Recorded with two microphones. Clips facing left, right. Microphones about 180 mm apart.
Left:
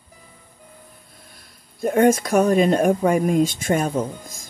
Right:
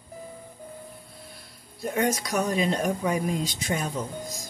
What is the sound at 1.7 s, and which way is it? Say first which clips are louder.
Speech: left 9 dB; 50° left (ahead or behind).